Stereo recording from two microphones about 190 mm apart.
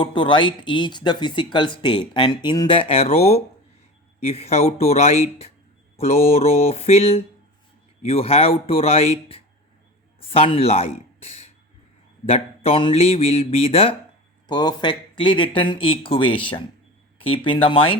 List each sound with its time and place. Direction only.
0.0 s speech: 25° left (ahead or behind)